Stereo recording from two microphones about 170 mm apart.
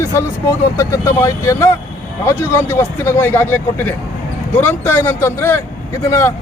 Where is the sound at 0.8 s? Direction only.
15° left (ahead or behind).